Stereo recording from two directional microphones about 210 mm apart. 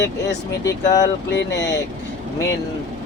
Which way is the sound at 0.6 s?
15° left (ahead or behind).